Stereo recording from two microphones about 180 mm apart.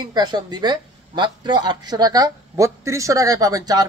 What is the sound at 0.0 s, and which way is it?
A woman's voice, 25° right (ahead or behind).